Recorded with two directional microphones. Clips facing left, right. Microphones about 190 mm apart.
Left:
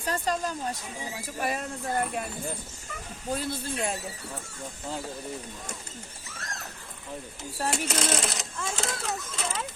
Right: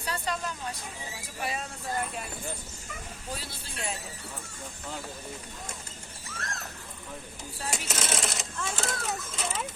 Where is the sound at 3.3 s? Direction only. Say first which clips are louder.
Left 9 dB; 50° left (ahead or behind).